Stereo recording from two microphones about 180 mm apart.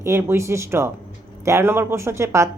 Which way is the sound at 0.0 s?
15° right (ahead or behind).